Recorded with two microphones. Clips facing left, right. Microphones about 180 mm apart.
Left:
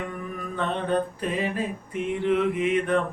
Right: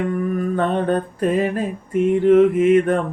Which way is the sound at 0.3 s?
50° right (ahead or behind).